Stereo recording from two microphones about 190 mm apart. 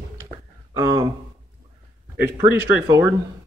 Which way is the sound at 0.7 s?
15° right (ahead or behind).